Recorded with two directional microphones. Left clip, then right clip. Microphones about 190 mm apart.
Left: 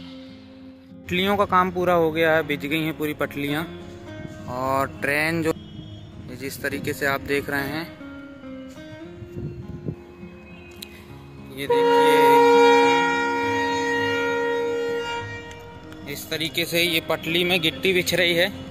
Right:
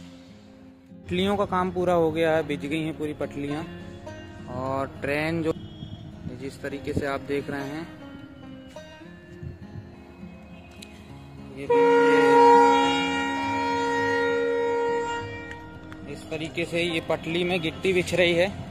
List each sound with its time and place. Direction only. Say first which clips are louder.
1.0 s speech: left 4 dB; centre (ahead or behind)
11.5 s a sound: left 1 dB; 15° left (ahead or behind); by 14.1 s 5° right (ahead or behind)
14.2 s civil defense siren: left 1 dB; 30° left (ahead or behind)
14.5 s civil defense siren: even; 55° left (ahead or behind)
16.1 s speech: left 6 dB; 15° left (ahead or behind)